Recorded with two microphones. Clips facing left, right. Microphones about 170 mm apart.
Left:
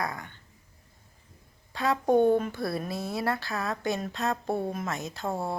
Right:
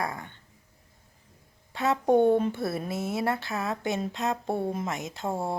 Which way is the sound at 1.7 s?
25° right (ahead or behind).